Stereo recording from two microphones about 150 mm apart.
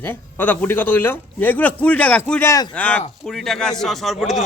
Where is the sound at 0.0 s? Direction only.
15° left (ahead or behind).